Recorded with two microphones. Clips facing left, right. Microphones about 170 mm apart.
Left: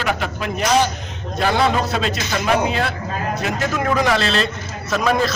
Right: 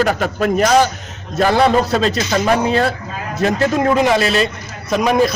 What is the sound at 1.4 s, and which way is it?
A man's voice, 35° right (ahead or behind).